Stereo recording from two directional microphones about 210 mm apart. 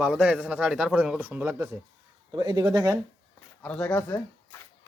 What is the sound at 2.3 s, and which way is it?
Speech, 20° right (ahead or behind).